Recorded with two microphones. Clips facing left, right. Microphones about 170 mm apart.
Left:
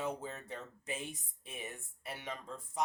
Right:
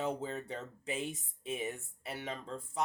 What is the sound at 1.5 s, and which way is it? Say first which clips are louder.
Speech: right 8 dB; 25° right (ahead or behind).